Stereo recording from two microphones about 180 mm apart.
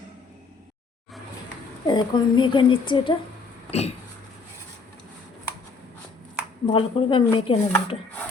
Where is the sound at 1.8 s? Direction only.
25° left (ahead or behind).